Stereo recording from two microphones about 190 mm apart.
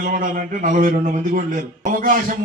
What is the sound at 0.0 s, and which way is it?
A man's voice, 45° right (ahead or behind).